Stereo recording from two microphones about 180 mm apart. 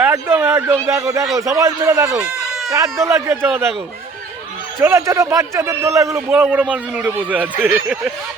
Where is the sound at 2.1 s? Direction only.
5° right (ahead or behind).